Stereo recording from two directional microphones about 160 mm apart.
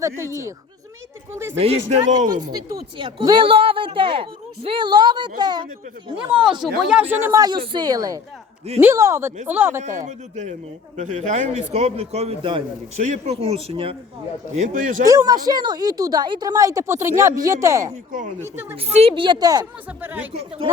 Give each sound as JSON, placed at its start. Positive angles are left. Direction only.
{"t": 0.0, "sound": "speech", "side_deg": -20}
{"t": 1.5, "sound": "a woman's voice", "side_deg": -40}
{"t": 2.0, "sound": "speech", "side_deg": -55}
{"t": 3.2, "sound": "a woman's voice", "side_deg": -30}
{"t": 6.7, "sound": "speech", "side_deg": -5}
{"t": 10.1, "sound": "a woman's voice", "side_deg": -50}
{"t": 14.5, "sound": "speech", "side_deg": -55}
{"t": 15.0, "sound": "speech", "side_deg": -20}
{"t": 18.1, "sound": "speech", "side_deg": -55}
{"t": 18.4, "sound": "speech", "side_deg": -15}
{"t": 18.8, "sound": "speech", "side_deg": -40}
{"t": 20.3, "sound": "a woman's voice", "side_deg": -40}